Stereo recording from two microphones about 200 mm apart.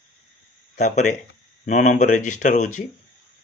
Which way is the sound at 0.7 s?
35° left (ahead or behind).